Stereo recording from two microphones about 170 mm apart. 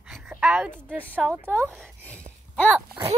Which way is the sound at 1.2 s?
10° right (ahead or behind).